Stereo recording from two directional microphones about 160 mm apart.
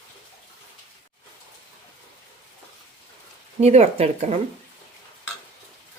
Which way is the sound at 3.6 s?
45° right (ahead or behind).